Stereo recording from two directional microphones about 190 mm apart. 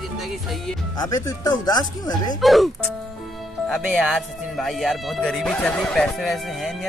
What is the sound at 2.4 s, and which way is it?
Speech, centre (ahead or behind).